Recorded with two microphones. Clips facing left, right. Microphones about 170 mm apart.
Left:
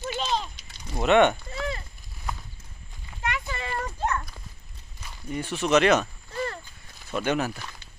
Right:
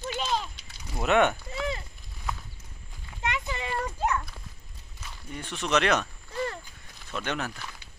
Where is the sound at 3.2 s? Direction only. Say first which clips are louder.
Even; 20° right (ahead or behind).